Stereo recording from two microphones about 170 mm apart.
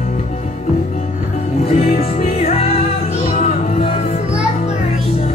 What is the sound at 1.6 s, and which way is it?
Music, 40° left (ahead or behind).